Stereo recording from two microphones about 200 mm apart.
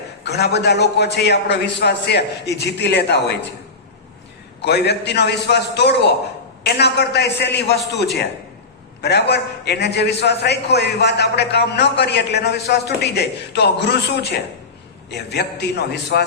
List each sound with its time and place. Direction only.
0.3 s a man's voice: 55° left (ahead or behind)
4.6 s a man's voice: 55° left (ahead or behind)